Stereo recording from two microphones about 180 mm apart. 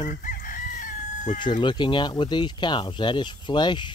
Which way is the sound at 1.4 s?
25° left (ahead or behind).